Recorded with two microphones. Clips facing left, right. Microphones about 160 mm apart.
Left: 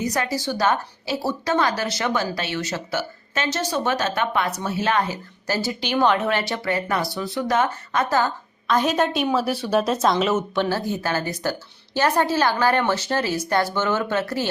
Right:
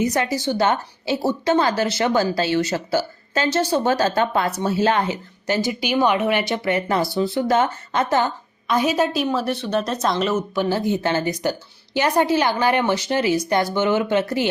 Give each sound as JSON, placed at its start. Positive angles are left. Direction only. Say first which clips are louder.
{"t": 0.0, "sound": "a woman's voice", "louder": "right 3 dB", "side_deg": -25}
{"t": 10.7, "sound": "a woman's voice", "louder": "right 4 dB", "side_deg": -20}